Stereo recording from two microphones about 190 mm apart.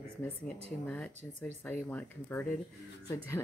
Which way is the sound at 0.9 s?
10° left (ahead or behind).